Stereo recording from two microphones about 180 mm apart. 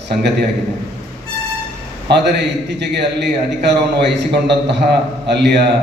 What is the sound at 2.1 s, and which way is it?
A man's voice, 70° right (ahead or behind).